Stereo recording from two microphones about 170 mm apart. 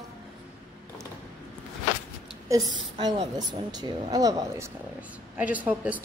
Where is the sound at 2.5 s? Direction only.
25° right (ahead or behind).